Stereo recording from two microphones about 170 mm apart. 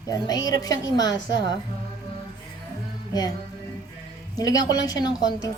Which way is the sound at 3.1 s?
20° left (ahead or behind).